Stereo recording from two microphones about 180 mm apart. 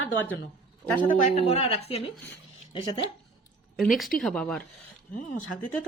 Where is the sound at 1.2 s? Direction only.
35° left (ahead or behind).